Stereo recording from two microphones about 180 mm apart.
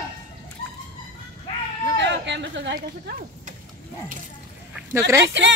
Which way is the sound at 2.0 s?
80° right.